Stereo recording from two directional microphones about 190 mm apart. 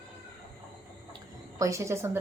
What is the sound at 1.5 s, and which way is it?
Speech, 15° right (ahead or behind).